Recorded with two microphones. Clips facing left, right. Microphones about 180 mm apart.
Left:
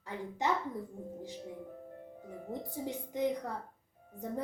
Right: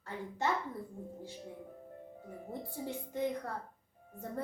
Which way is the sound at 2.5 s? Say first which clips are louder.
Left 2 dB; 15° left (ahead or behind).